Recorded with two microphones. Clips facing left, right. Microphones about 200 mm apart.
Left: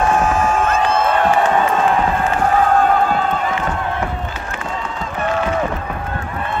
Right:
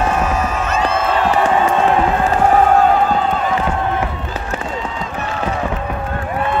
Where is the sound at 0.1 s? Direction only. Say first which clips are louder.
Left 2 dB; 50° left (ahead or behind).